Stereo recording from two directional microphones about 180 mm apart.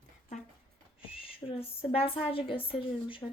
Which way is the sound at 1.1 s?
30° left (ahead or behind).